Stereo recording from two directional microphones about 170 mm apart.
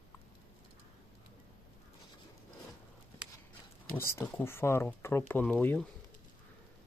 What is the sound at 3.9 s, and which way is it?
Speech, 15° left (ahead or behind).